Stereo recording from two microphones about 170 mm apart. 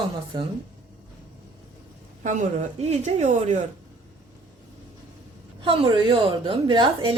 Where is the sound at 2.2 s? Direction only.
45° right (ahead or behind).